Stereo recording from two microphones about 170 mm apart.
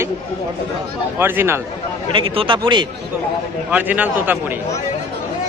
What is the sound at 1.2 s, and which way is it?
Speech, 15° right (ahead or behind).